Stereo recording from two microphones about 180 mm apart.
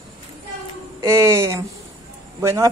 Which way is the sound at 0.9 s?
15° right (ahead or behind).